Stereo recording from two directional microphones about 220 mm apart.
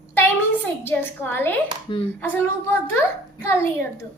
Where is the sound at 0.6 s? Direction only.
10° left (ahead or behind).